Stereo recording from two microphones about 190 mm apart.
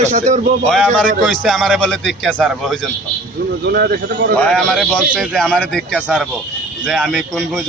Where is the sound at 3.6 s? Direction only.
60° right (ahead or behind).